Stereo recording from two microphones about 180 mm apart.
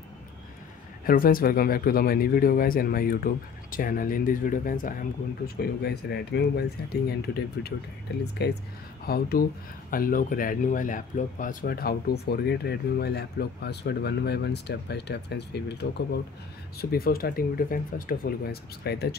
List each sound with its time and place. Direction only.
1.0 s speech: 55° left (ahead or behind)
5.6 s speech: 65° left (ahead or behind)